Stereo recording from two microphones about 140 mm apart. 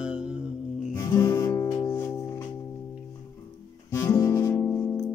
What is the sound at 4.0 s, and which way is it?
Music, 25° left (ahead or behind).